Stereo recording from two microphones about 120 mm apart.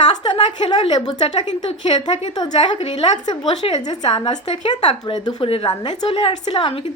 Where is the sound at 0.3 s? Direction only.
40° left (ahead or behind).